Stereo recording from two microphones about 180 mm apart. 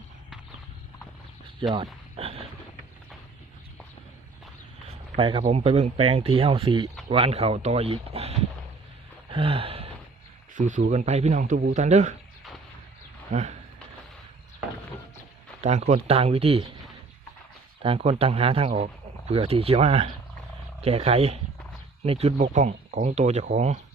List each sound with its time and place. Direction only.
1.7 s a sound: 30° right (ahead or behind)
4.9 s speech: 30° right (ahead or behind)
9.3 s a sound: 30° right (ahead or behind)
10.5 s a man's voice: 45° right (ahead or behind)
13.3 s speech: 40° right (ahead or behind)
15.6 s speech: 40° right (ahead or behind)
17.8 s speech: 35° right (ahead or behind)